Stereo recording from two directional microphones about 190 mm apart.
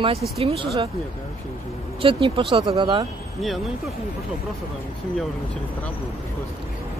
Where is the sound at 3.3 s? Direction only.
Centre (ahead or behind).